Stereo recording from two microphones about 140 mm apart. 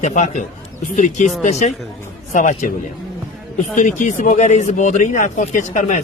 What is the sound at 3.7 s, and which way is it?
Speech, 65° left (ahead or behind).